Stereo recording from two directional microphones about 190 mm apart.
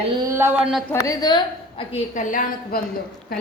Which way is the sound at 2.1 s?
45° left (ahead or behind).